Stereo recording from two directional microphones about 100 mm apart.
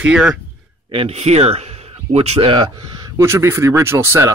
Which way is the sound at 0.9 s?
75° right (ahead or behind).